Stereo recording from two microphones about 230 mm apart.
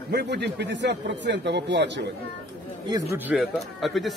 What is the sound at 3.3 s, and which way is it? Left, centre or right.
Speech, centre.